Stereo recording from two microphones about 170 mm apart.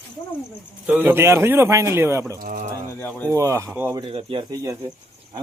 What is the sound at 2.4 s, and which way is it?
Speech, 50° right (ahead or behind).